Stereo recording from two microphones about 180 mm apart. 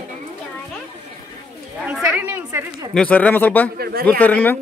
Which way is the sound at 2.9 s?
10° left (ahead or behind).